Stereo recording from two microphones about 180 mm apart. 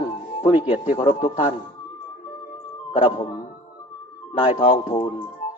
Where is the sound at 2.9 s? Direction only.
30° left (ahead or behind).